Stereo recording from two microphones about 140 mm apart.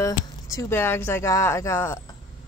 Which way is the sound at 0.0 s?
20° left (ahead or behind).